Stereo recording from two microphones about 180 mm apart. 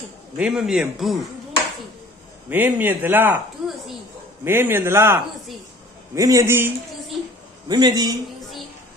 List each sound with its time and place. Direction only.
0.4 s a man's voice: 5° right (ahead or behind)
2.5 s a man's voice: 10° right (ahead or behind)
4.5 s a man's voice: 10° right (ahead or behind)